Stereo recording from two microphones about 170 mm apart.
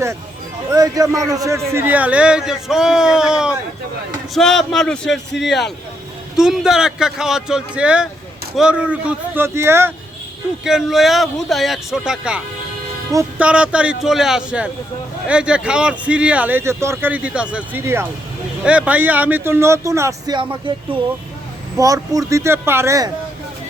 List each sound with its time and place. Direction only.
0.7 s speech: 20° right (ahead or behind)
10.6 s speech: 5° right (ahead or behind)
13.4 s speech: 5° right (ahead or behind)